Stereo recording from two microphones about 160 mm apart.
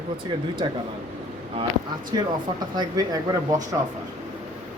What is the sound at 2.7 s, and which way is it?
Speech, 25° right (ahead or behind).